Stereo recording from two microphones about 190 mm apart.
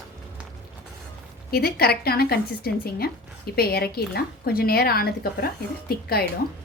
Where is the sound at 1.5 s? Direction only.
55° left (ahead or behind).